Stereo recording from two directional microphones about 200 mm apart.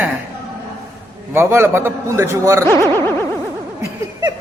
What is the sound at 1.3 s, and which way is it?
A man's voice, 10° right (ahead or behind).